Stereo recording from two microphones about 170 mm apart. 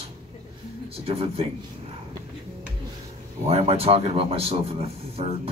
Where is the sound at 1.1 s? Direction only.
35° right (ahead or behind).